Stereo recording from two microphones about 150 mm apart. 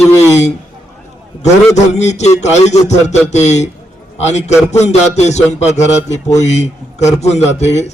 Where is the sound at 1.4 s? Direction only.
50° left (ahead or behind).